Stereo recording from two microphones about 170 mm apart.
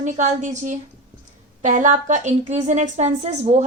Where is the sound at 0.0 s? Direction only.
45° right (ahead or behind).